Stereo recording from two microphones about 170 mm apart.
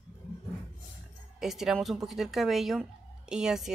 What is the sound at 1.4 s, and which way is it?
Speech, centre (ahead or behind).